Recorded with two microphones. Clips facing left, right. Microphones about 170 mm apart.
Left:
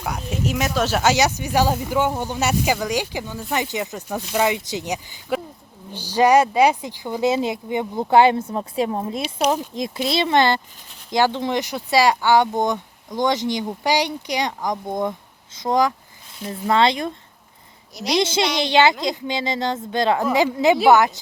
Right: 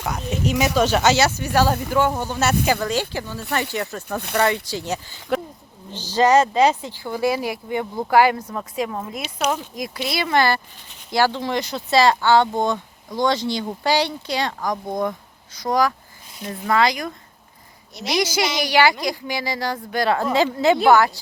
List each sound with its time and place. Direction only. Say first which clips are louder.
0.0 s speech: right 1 dB; 5° left (ahead or behind)
1.1 s speech: right 1 dB; 15° left (ahead or behind)
17.9 s a woman's voice: left 3 dB; centre (ahead or behind)
18.2 s speech: left 1 dB; 25° left (ahead or behind)